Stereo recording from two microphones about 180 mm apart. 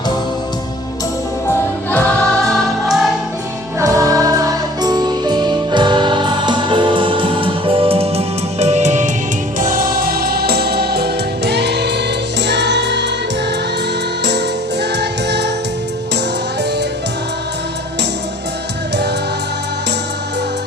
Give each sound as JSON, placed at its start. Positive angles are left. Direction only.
{"t": 2.5, "sound": "music", "side_deg": 0}
{"t": 3.8, "sound": "music", "side_deg": -15}
{"t": 14.3, "sound": "music", "side_deg": -70}